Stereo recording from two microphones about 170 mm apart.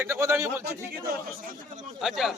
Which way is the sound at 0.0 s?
15° right (ahead or behind).